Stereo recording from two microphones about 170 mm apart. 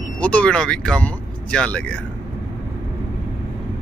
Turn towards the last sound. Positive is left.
turn(degrees=5)  # may be behind; listen again after turning